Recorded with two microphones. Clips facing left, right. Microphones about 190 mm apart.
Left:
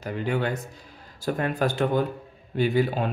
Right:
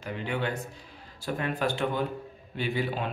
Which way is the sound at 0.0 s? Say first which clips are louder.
Left 5 dB; 40° left (ahead or behind).